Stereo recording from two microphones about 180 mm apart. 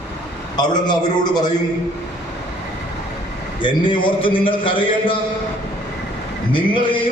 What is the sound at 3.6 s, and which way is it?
A man's voice, 25° left (ahead or behind).